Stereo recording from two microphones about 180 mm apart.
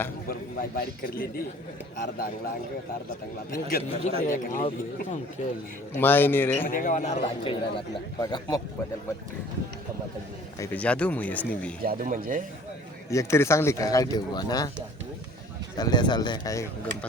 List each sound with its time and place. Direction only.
0.3 s a man's voice: 60° left (ahead or behind)
3.5 s a man's voice: 55° left (ahead or behind)
6.0 s speech: 10° left (ahead or behind)
6.7 s speech: 50° left (ahead or behind); by 8.6 s 25° left (ahead or behind)
10.6 s speech: 5° left (ahead or behind)
11.8 s speech: 50° right (ahead or behind)
13.1 s speech: 15° left (ahead or behind)
15.8 s speech: 25° left (ahead or behind)